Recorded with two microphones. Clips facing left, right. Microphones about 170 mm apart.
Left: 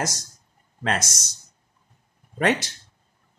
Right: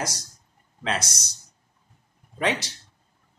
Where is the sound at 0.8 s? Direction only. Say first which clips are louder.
Left 2 dB; 50° left (ahead or behind).